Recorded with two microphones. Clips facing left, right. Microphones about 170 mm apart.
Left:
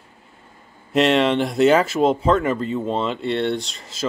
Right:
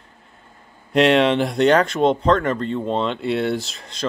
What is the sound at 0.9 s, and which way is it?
Speech, centre (ahead or behind).